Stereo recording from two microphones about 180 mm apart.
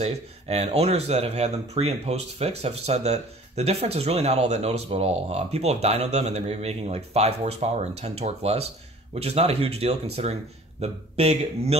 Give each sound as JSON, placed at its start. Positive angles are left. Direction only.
{"t": 0.0, "sound": "speech", "side_deg": -35}